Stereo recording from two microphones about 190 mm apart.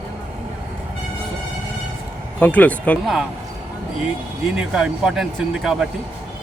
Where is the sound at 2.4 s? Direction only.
10° left (ahead or behind).